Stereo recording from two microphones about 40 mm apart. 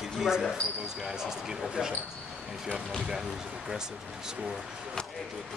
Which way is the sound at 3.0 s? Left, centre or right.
Centre.